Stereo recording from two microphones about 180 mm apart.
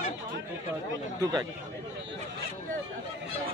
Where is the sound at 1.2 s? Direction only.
20° right (ahead or behind).